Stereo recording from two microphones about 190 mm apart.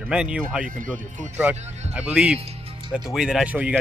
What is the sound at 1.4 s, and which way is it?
Speech, 10° right (ahead or behind).